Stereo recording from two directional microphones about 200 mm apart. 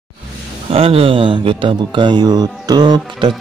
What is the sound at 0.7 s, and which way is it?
Speech, 30° right (ahead or behind).